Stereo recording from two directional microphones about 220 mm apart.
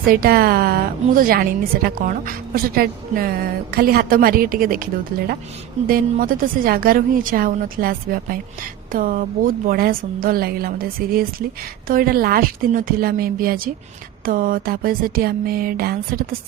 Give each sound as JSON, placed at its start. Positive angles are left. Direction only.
{"t": 0.1, "sound": "a woman's voice", "side_deg": -45}